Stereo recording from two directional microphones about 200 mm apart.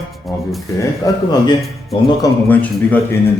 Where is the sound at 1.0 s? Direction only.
15° left (ahead or behind).